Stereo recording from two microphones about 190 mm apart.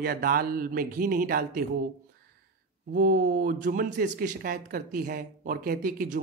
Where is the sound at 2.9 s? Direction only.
45° right (ahead or behind).